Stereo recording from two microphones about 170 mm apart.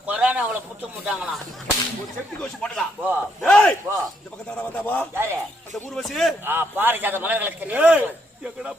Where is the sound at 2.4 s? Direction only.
5° left (ahead or behind).